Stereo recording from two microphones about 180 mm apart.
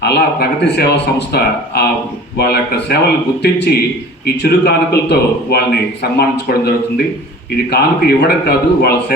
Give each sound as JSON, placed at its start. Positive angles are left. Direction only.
{"t": 0.0, "sound": "a man's voice", "side_deg": 65}